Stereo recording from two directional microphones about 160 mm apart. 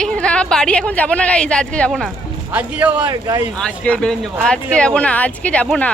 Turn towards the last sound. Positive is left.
turn(degrees=5)  # may be behind; listen again after turning